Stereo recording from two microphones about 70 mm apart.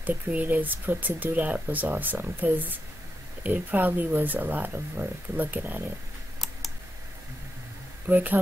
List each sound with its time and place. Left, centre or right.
0.0 s speech: right
8.1 s speech: right